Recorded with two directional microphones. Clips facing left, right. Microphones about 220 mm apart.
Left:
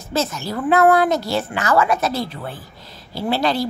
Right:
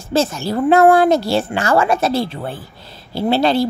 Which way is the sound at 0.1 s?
30° right (ahead or behind).